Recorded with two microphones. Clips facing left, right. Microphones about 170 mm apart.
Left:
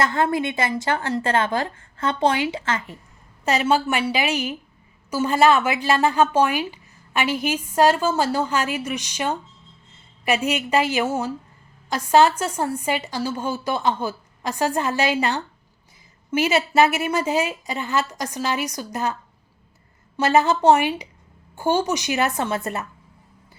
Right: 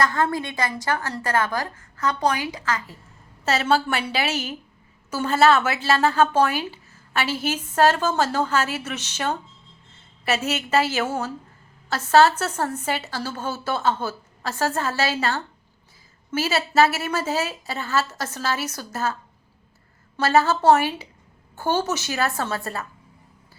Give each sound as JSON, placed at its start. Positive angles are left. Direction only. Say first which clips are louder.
{"t": 0.0, "sound": "a woman's voice", "louder": "left 2 dB", "side_deg": 20}
{"t": 3.4, "sound": "a woman's voice", "louder": "left 1 dB", "side_deg": 15}
{"t": 20.1, "sound": "a woman's voice", "louder": "left 1 dB", "side_deg": 15}